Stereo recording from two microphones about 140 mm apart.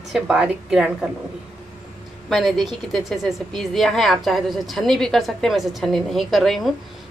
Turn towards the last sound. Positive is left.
turn(degrees=0)  # may be behind; listen again after turning